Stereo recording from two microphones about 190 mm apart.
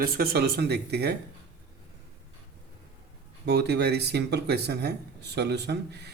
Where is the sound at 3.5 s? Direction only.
60° right (ahead or behind).